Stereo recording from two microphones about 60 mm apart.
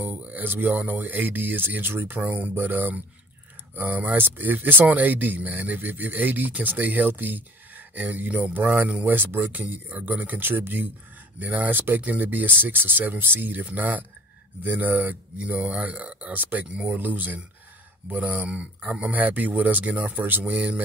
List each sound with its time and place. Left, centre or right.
0.0 s a sound: right
0.5 s speech: right
9.1 s speech: right
20.5 s speech: right